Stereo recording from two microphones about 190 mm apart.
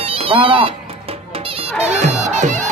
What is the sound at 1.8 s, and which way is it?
Music, 35° right (ahead or behind).